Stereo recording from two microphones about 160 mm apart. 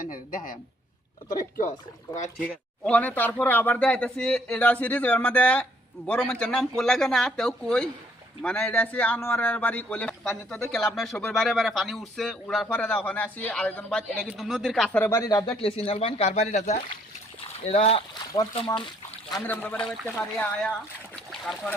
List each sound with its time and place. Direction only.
0.0 s speech: 60° left (ahead or behind)
1.3 s speech: 20° left (ahead or behind)
2.4 s speech: 10° left (ahead or behind)
14.3 s speech: 5° right (ahead or behind); by 15.4 s 20° left (ahead or behind)
15.5 s speech: 35° left (ahead or behind)
19.5 s speech: 10° left (ahead or behind)